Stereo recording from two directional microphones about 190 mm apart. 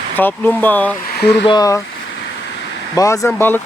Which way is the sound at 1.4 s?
20° left (ahead or behind).